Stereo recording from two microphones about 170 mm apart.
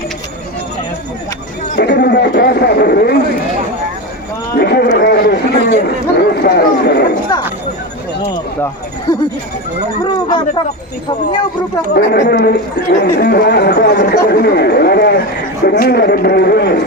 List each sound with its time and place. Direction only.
1.7 s speech: 80° left; by 3.2 s 65° left (ahead or behind)
4.5 s a sound: 70° left (ahead or behind)
5.8 s chatter: 70° left (ahead or behind)
10.0 s speech: 25° left (ahead or behind)
11.9 s speech: 75° left (ahead or behind)